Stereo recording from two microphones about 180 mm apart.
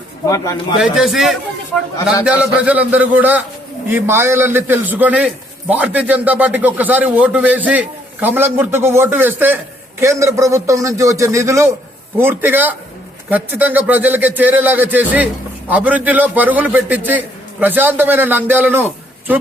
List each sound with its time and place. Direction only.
0.3 s speech: 20° left (ahead or behind)
0.8 s a man's voice: centre (ahead or behind)